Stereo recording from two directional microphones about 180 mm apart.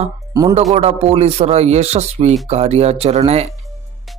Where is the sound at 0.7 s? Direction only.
35° right (ahead or behind).